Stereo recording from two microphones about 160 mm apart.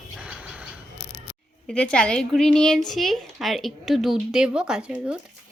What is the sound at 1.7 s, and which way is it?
A woman's voice, 5° left (ahead or behind).